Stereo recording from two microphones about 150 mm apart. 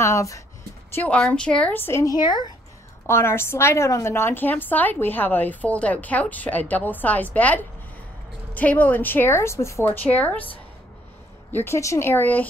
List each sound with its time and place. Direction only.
0.0 s speech: 20° left (ahead or behind)
0.9 s a woman's voice: 10° left (ahead or behind)
2.1 s speech: 30° left (ahead or behind)
3.1 s a woman's voice: 15° left (ahead or behind)
11.5 s a woman's voice: 15° left (ahead or behind)